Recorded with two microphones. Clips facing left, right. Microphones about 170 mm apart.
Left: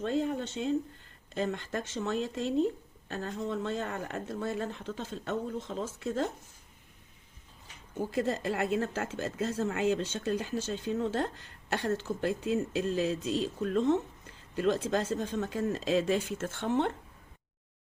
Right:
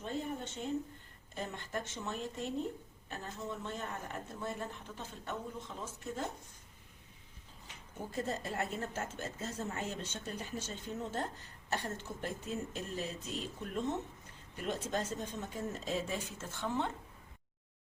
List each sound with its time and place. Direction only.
0.0 s speech: 90° left
8.1 s speech: 90° left; by 16.9 s 70° left (ahead or behind)